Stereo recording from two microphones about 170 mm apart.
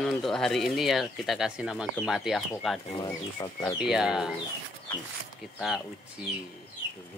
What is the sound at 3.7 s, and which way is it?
Speech, 5° right (ahead or behind).